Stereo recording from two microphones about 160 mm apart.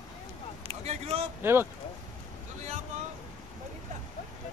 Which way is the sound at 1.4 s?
15° right (ahead or behind).